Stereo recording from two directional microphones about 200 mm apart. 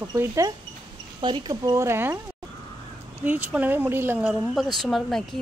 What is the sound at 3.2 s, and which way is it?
Speech, 10° right (ahead or behind).